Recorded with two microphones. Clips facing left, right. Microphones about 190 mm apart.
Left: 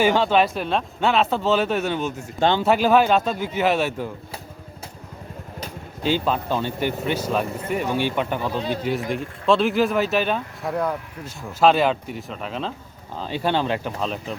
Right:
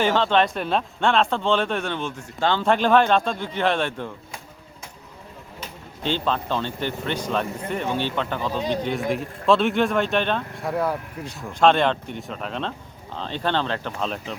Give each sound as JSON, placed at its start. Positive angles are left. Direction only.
{"t": 0.0, "sound": "speech", "side_deg": 10}
{"t": 2.4, "sound": "speech", "side_deg": 15}
{"t": 2.6, "sound": "speech", "side_deg": 5}
{"t": 6.0, "sound": "speech", "side_deg": 10}
{"t": 14.0, "sound": "speech", "side_deg": 0}